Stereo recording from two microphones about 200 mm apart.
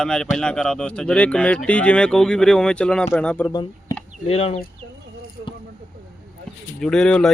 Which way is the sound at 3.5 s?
20° left (ahead or behind).